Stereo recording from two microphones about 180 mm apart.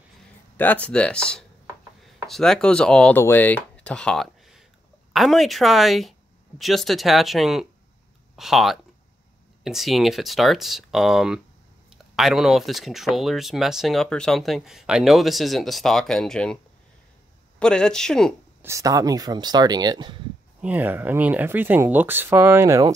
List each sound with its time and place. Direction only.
0.6 s speech: 10° left (ahead or behind)
17.6 s speech: 5° left (ahead or behind)
18.6 s speech: 15° right (ahead or behind)
20.6 s speech: 10° right (ahead or behind)